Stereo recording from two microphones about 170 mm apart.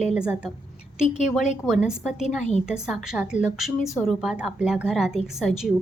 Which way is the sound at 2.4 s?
40° left (ahead or behind).